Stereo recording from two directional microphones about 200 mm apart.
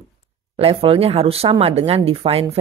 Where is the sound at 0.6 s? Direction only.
30° right (ahead or behind).